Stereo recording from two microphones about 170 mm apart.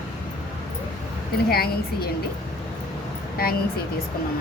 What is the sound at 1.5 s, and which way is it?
Speech, 65° left (ahead or behind).